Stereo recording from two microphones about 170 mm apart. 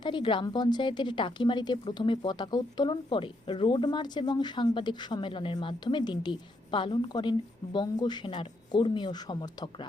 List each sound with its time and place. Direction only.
0.0 s a woman's voice: 25° left (ahead or behind)